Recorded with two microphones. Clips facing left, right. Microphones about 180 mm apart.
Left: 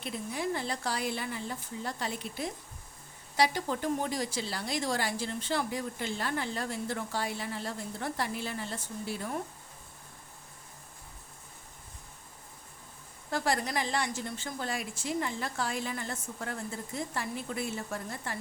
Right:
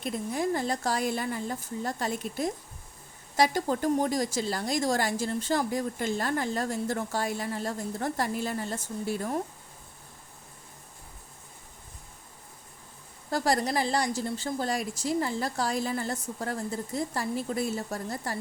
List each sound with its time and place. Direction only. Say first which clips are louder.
0.0 s a woman's voice: right 5 dB; 45° right (ahead or behind)
13.3 s a woman's voice: right 4 dB; 35° right (ahead or behind)